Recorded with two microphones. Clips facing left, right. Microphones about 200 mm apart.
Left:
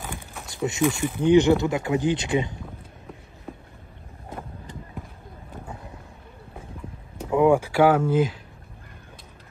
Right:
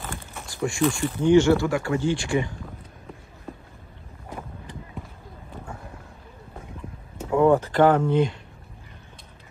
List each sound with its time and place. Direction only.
0.5 s speech: 20° left (ahead or behind)
7.2 s speech: 15° left (ahead or behind)